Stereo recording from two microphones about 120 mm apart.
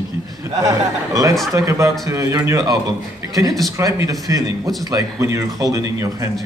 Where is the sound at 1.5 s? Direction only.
25° right (ahead or behind).